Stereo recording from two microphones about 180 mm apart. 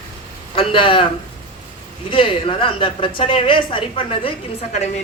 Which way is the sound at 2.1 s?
30° left (ahead or behind).